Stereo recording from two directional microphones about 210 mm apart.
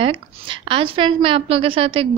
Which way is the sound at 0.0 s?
25° right (ahead or behind).